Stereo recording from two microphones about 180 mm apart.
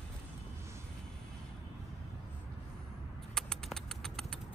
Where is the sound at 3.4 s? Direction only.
5° left (ahead or behind).